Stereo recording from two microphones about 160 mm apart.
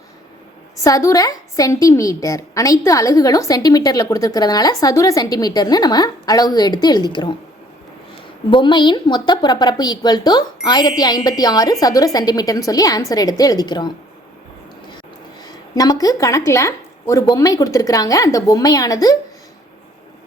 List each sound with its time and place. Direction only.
0.9 s a woman's voice: 20° left (ahead or behind)
8.4 s a woman's voice: 30° left (ahead or behind)
15.4 s a woman's voice: 25° left (ahead or behind)